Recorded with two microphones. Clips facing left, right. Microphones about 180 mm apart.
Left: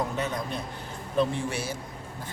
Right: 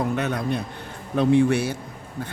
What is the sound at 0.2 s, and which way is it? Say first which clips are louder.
Speech: right 6 dB; 65° right (ahead or behind).